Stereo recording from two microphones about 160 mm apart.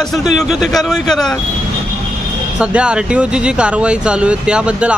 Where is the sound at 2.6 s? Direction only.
5° right (ahead or behind).